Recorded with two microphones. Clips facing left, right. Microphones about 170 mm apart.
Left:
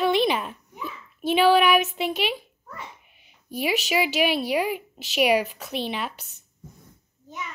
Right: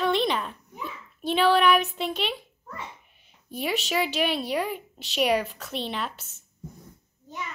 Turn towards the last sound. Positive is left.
turn(degrees=0)  # may be behind; listen again after turning